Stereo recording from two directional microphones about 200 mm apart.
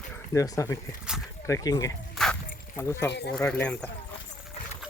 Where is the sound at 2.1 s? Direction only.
5° left (ahead or behind).